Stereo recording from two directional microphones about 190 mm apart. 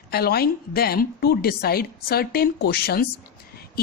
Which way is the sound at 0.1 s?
55° left (ahead or behind).